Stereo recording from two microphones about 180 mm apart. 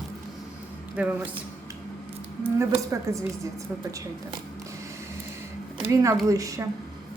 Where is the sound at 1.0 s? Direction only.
10° right (ahead or behind).